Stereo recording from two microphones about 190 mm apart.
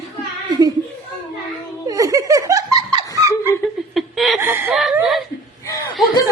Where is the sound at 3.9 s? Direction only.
Centre (ahead or behind).